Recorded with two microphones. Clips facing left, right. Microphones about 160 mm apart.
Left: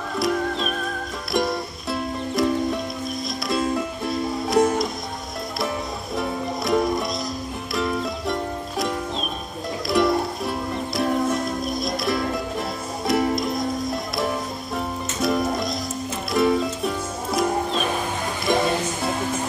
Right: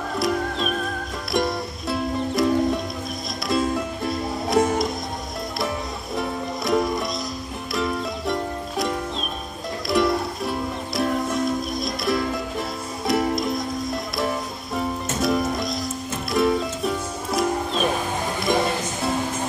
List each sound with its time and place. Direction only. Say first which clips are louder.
0.2 s music: left 1 dB; centre (ahead or behind)
6.1 s music: left 1 dB; centre (ahead or behind)